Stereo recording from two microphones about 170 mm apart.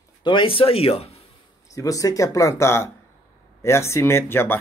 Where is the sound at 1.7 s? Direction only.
20° left (ahead or behind).